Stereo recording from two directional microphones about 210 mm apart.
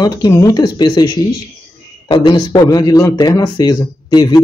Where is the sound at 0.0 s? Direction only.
20° left (ahead or behind).